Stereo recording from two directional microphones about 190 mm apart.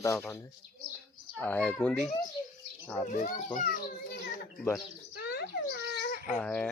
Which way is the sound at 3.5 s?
50° left (ahead or behind).